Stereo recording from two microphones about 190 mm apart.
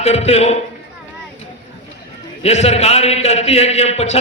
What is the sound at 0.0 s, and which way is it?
Speech, 35° left (ahead or behind).